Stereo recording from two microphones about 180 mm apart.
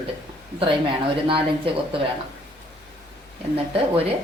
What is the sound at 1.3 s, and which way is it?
Speech, 30° right (ahead or behind).